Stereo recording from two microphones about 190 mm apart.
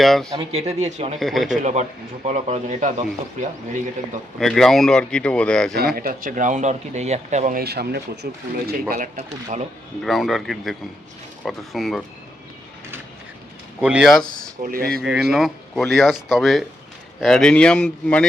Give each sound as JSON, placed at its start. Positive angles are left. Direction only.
{"t": 0.0, "sound": "speech", "side_deg": 0}
{"t": 0.5, "sound": "speech", "side_deg": -35}
{"t": 1.2, "sound": "speech", "side_deg": 0}
{"t": 1.6, "sound": "speech", "side_deg": -40}
{"t": 4.4, "sound": "speech", "side_deg": 0}
{"t": 5.7, "sound": "speech", "side_deg": -55}
{"t": 7.6, "sound": "speech", "side_deg": -55}
{"t": 8.9, "sound": "speech", "side_deg": -40}
{"t": 10.0, "sound": "speech", "side_deg": 0}
{"t": 13.8, "sound": "speech", "side_deg": -5}
{"t": 14.3, "sound": "speech", "side_deg": -45}
{"t": 15.0, "sound": "speech", "side_deg": -5}